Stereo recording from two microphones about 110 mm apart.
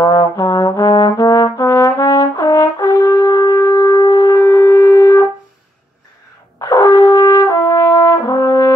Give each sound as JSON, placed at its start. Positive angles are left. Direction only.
{"t": 0.0, "sound": "brass instrument", "side_deg": 30}
{"t": 6.6, "sound": "brass instrument", "side_deg": 25}